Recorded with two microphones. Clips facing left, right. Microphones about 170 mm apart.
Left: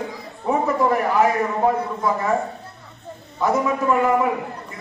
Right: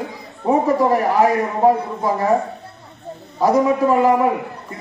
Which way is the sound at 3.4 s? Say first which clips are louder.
Right 5 dB; 35° right (ahead or behind).